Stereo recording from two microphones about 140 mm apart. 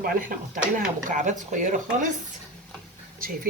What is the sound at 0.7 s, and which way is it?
Speech, 70° right (ahead or behind).